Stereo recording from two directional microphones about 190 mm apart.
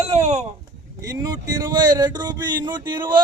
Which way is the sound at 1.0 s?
20° right (ahead or behind).